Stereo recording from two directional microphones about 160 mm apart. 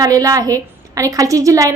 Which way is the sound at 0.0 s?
20° right (ahead or behind).